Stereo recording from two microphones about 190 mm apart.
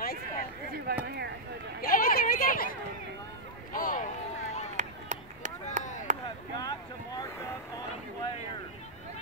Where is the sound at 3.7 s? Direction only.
45° left (ahead or behind).